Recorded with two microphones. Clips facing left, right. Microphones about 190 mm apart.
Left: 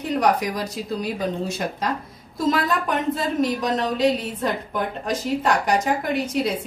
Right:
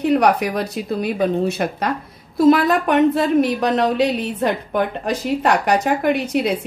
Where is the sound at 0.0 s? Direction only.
65° right (ahead or behind).